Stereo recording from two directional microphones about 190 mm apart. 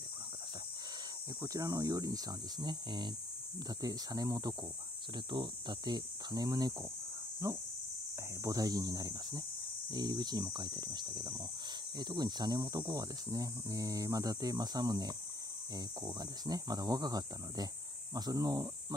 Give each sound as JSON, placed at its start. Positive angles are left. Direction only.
{"t": 1.4, "sound": "speech", "side_deg": -20}